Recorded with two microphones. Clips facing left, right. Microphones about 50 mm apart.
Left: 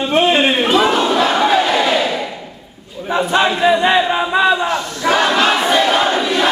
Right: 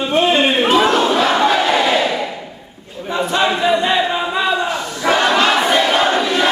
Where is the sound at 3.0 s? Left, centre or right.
Centre.